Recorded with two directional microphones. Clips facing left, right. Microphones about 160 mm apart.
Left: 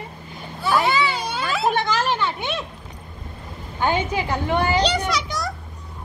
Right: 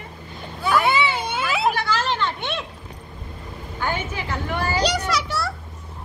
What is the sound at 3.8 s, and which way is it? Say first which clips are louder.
Speech: left 5 dB; 15° left (ahead or behind).